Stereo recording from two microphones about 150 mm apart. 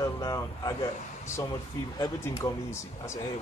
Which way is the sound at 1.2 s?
20° left (ahead or behind).